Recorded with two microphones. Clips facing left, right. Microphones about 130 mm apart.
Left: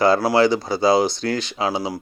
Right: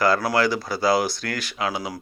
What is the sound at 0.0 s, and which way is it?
Speech, 25° left (ahead or behind).